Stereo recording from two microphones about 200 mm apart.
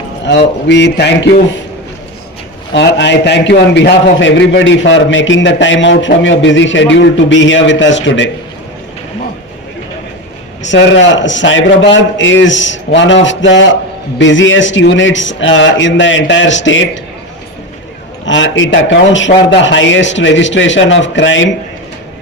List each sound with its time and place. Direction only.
0.3 s a man's voice: 60° left (ahead or behind)
2.7 s a man's voice: 60° left (ahead or behind)
10.6 s a man's voice: 65° left (ahead or behind)
18.3 s a man's voice: 70° left (ahead or behind)